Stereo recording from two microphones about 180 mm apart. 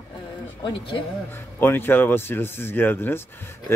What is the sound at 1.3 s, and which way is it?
Speech, 10° left (ahead or behind).